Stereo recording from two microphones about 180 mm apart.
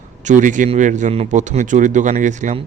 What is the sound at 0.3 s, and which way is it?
A man's voice, 45° right (ahead or behind).